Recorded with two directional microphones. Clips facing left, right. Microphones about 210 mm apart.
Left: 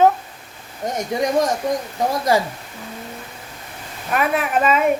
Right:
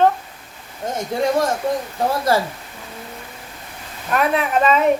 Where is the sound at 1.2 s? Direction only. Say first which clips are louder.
Even; 15° left (ahead or behind).